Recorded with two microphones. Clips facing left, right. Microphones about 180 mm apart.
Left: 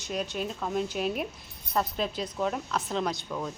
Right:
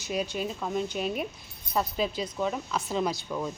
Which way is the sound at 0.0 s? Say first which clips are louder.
Right 1 dB; 5° right (ahead or behind).